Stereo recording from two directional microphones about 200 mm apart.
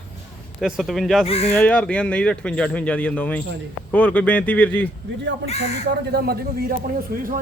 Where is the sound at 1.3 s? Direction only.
30° left (ahead or behind).